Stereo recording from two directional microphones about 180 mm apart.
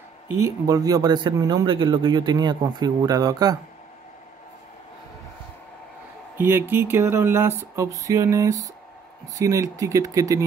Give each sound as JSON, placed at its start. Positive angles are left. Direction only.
{"t": 0.3, "sound": "a man's voice", "side_deg": -15}
{"t": 6.3, "sound": "speech", "side_deg": -15}